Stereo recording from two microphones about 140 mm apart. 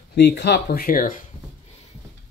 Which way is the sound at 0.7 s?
90° left.